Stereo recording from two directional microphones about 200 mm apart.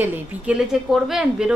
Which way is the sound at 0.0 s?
10° right (ahead or behind).